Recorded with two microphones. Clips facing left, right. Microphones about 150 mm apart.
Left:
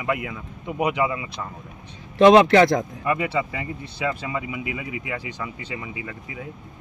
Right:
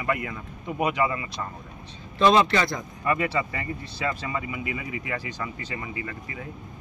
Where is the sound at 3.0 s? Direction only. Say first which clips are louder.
Left 2 dB; 10° left (ahead or behind).